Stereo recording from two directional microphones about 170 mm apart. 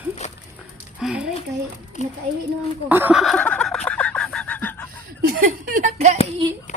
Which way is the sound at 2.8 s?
10° right (ahead or behind).